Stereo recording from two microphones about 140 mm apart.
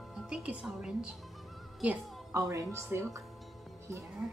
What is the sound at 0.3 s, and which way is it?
Speech, 5° right (ahead or behind).